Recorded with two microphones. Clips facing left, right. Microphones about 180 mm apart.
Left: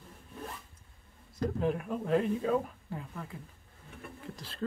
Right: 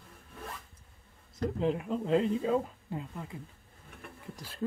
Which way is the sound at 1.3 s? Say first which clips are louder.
Right 1 dB; 20° right (ahead or behind).